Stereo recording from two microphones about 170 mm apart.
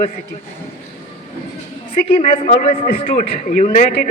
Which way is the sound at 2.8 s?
60° left (ahead or behind).